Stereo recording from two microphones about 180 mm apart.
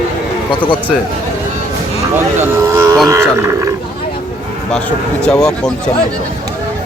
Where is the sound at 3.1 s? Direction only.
15° right (ahead or behind).